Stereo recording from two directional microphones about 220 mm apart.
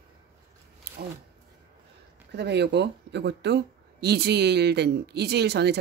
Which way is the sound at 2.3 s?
50° right (ahead or behind).